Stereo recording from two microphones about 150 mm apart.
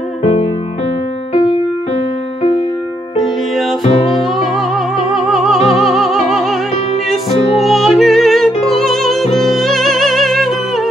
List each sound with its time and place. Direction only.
0.2 s music: 40° left (ahead or behind)
4.6 s music: centre (ahead or behind)
7.6 s music: centre (ahead or behind)